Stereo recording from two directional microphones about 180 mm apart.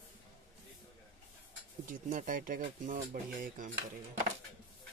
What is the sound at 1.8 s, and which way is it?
Speech, 50° right (ahead or behind).